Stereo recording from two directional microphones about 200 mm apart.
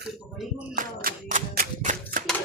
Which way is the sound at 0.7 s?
45° right (ahead or behind).